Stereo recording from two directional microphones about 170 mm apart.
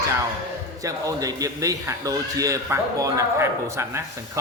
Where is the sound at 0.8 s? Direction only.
20° right (ahead or behind).